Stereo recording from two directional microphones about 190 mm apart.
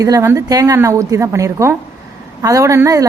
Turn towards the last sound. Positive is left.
turn(degrees=-15)  # may be behind; listen again after turning